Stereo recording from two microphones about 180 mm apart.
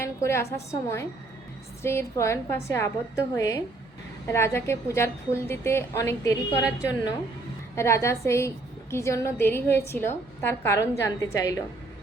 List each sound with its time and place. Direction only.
0.0 s a woman's voice: 15° left (ahead or behind)